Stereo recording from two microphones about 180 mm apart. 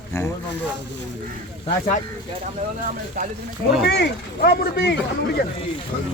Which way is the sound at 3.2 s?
45° right (ahead or behind).